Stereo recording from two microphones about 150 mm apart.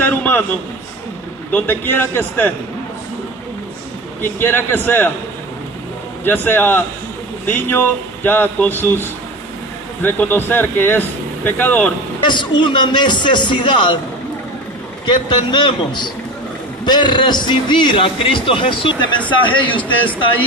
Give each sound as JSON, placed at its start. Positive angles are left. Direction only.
{"t": 0.0, "sound": "a sound", "side_deg": 10}
{"t": 1.5, "sound": "a man's voice", "side_deg": 15}
{"t": 4.2, "sound": "a man's voice", "side_deg": 15}
{"t": 6.2, "sound": "a man's voice", "side_deg": 15}
{"t": 12.2, "sound": "a man's voice", "side_deg": 30}
{"t": 15.0, "sound": "a man's voice", "side_deg": 30}